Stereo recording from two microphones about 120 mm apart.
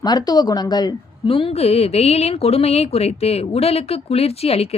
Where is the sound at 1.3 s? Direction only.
50° left (ahead or behind).